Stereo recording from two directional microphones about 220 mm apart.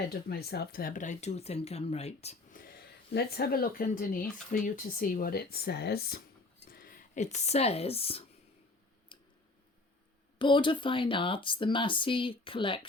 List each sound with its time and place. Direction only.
0.1 s speech: 45° left (ahead or behind); by 8.2 s 25° left (ahead or behind)
9.1 s a sound: 20° left (ahead or behind)
10.3 s speech: 20° left (ahead or behind)